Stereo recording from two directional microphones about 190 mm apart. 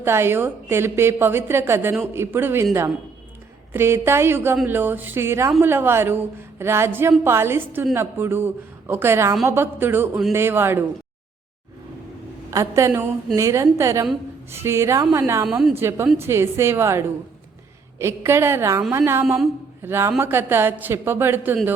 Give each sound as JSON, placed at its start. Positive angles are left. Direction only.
{"t": 0.0, "sound": "a woman's voice", "side_deg": -15}
{"t": 3.7, "sound": "a woman's voice", "side_deg": -15}
{"t": 12.5, "sound": "a woman's voice", "side_deg": -15}
{"t": 15.4, "sound": "a woman's voice", "side_deg": 0}
{"t": 15.7, "sound": "a woman's voice", "side_deg": -15}